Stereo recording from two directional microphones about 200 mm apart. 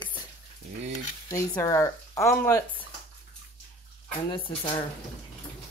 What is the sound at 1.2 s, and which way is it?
Speech, 15° left (ahead or behind).